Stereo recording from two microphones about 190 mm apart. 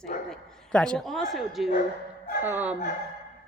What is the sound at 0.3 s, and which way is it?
A woman's voice, 5° left (ahead or behind).